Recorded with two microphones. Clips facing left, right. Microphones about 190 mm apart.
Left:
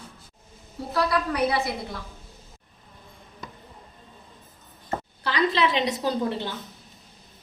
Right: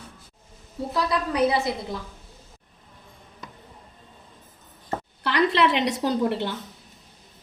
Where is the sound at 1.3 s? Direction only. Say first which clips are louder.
Right 3 dB; 20° right (ahead or behind).